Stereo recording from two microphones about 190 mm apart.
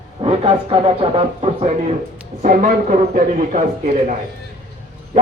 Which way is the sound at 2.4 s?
45° right (ahead or behind).